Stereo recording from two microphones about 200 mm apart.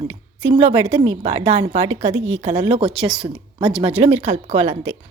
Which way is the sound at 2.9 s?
5° right (ahead or behind).